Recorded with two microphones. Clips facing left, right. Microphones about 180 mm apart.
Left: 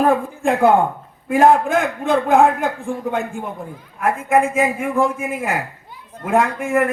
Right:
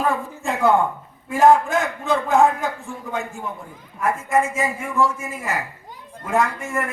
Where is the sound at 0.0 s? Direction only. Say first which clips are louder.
Left 7 dB; 55° left (ahead or behind).